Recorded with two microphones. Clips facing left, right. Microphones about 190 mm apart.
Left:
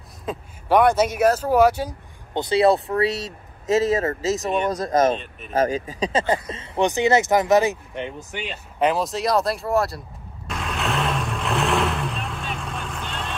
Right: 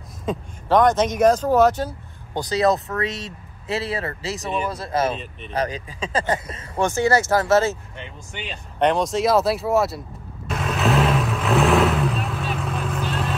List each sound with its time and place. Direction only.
0.3 s speech: centre (ahead or behind)
2.3 s speech: 25° left (ahead or behind); by 5.1 s 45° left (ahead or behind)
5.1 s speech: centre (ahead or behind)
5.5 s speech: 45° left (ahead or behind)
6.1 s speech: 25° left (ahead or behind)
8.3 s a sound: 5° left (ahead or behind)